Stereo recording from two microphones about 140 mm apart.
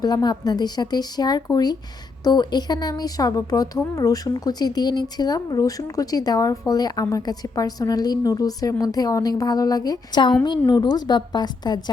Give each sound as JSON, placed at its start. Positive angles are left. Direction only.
{"t": 0.0, "sound": "a woman's voice", "side_deg": 30}